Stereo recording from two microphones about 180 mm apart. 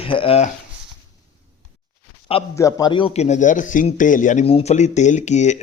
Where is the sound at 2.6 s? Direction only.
20° left (ahead or behind).